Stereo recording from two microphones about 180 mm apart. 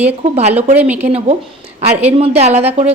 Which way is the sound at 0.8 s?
10° right (ahead or behind).